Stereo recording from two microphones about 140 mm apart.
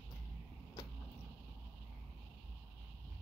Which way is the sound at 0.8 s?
30° left (ahead or behind).